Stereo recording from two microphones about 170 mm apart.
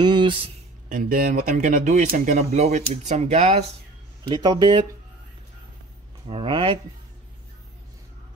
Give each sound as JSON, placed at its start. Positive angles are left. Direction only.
{"t": 0.0, "sound": "a sound", "side_deg": -25}
{"t": 0.8, "sound": "speech", "side_deg": -55}
{"t": 4.2, "sound": "speech", "side_deg": -25}
{"t": 6.2, "sound": "speech", "side_deg": -30}